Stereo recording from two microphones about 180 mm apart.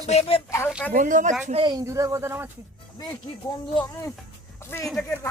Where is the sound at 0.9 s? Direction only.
45° right (ahead or behind).